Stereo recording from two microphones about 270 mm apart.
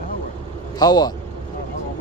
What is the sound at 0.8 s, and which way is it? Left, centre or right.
Speech, centre.